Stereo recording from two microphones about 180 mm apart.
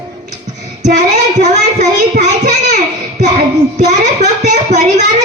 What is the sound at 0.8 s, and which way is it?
A child's voice, 40° right (ahead or behind).